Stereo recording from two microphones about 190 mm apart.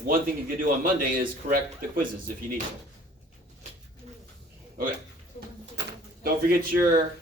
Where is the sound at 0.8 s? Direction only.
50° right (ahead or behind).